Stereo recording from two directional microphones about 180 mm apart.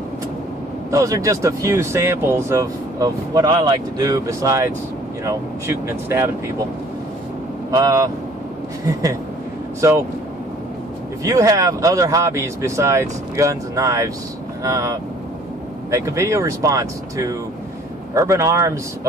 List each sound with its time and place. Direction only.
0.9 s speech: 20° right (ahead or behind)
7.7 s speech: 20° right (ahead or behind)
9.8 s speech: 15° right (ahead or behind)
11.2 s speech: 20° right (ahead or behind)